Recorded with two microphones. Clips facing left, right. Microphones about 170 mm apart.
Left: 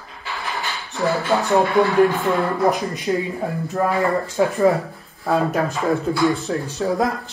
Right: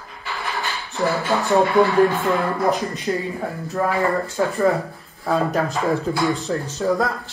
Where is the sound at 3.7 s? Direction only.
15° left (ahead or behind).